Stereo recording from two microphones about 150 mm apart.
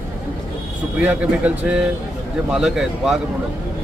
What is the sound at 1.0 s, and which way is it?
Speech, 10° right (ahead or behind).